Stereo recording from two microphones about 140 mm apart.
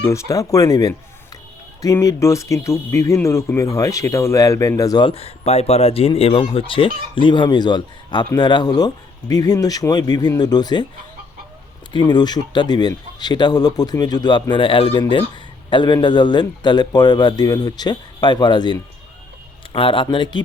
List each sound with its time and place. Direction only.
0.0 s speech: 20° left (ahead or behind)
5.0 s speech: 45° left (ahead or behind); by 10.8 s 30° left (ahead or behind)
11.9 s speech: 30° left (ahead or behind)